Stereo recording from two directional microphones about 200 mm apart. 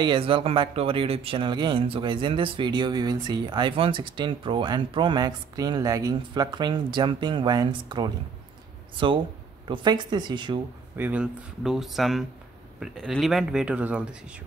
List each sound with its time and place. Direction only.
0.0 s speech: 25° right (ahead or behind)
11.0 s speech: 5° right (ahead or behind)